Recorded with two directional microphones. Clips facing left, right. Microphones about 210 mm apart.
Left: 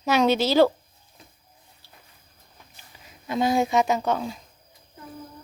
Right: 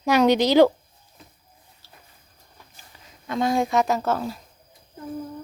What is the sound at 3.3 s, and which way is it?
A woman's voice, 5° left (ahead or behind).